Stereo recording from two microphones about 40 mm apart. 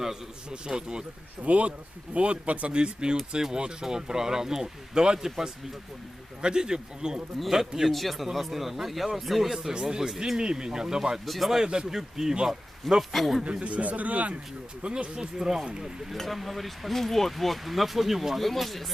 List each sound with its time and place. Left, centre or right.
0.5 s a man's voice: centre
1.5 s a man's voice: right; by 7.2 s centre
7.9 s speech: centre
9.6 s speech: centre
11.6 s a man's voice: centre
13.4 s speech: right
14.8 s a man's voice: right
15.4 s a man's voice: centre
16.1 s speech: centre